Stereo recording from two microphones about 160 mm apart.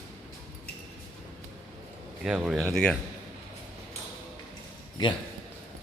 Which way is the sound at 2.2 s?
5° right (ahead or behind).